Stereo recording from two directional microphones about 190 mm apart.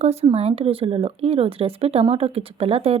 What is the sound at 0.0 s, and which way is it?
Speech, 35° right (ahead or behind).